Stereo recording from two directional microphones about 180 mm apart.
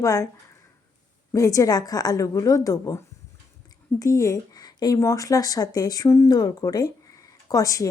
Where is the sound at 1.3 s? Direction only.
20° left (ahead or behind).